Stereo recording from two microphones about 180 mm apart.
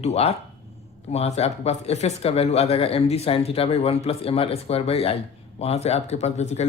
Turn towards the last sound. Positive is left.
turn(degrees=40)  # may be behind; listen again after turning